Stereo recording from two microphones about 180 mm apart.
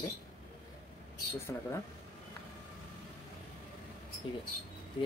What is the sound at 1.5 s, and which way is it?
Speech, 15° left (ahead or behind).